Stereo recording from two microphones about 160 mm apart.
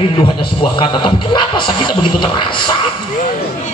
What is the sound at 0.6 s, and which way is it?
A man's voice, 30° left (ahead or behind).